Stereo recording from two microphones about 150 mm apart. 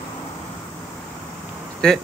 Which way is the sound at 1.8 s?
5° left (ahead or behind).